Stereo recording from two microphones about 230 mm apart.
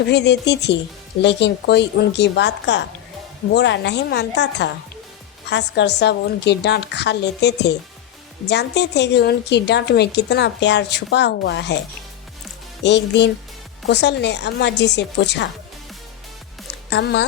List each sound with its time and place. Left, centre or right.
0.1 s a woman's voice: left
12.8 s a woman's voice: left
16.9 s a woman's voice: left